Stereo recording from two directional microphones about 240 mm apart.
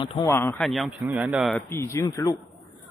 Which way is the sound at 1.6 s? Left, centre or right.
Centre.